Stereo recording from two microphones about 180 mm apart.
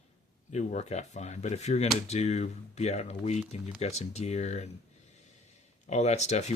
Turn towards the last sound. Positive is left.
turn(degrees=40)  # may be behind; listen again after turning